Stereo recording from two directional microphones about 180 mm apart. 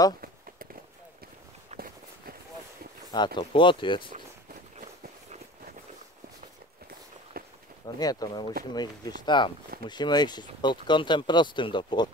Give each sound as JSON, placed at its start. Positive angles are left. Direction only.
{"t": 1.7, "sound": "walk", "side_deg": -40}
{"t": 3.3, "sound": "speech", "side_deg": 25}
{"t": 7.3, "sound": "a sound", "side_deg": -55}
{"t": 7.8, "sound": "speech", "side_deg": 20}